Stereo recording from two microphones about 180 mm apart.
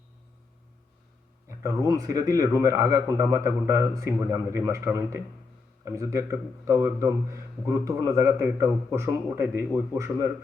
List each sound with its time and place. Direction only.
1.5 s speech: 15° right (ahead or behind)